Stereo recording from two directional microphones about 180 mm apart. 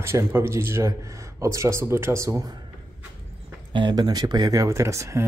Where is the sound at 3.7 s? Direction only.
25° right (ahead or behind).